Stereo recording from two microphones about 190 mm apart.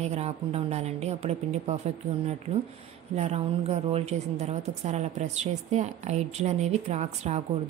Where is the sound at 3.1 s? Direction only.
35° right (ahead or behind).